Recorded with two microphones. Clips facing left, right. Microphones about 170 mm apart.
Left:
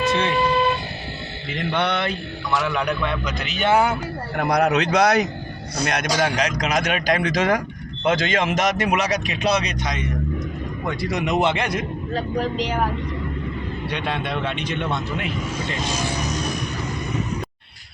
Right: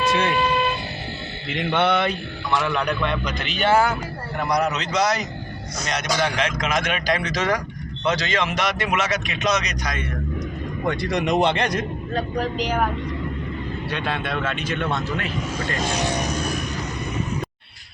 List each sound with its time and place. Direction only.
0.0 s vehicle: 10° right (ahead or behind)
1.5 s a man's voice: 5° right (ahead or behind)
2.5 s a man's voice: 5° left (ahead or behind)
4.4 s a man's voice: 55° left (ahead or behind)
6.2 s a man's voice: 40° left (ahead or behind); by 10.2 s 20° left (ahead or behind)
10.8 s a man's voice: 5° left (ahead or behind)
12.1 s speech: 25° left (ahead or behind)
13.9 s a man's voice: 15° left (ahead or behind)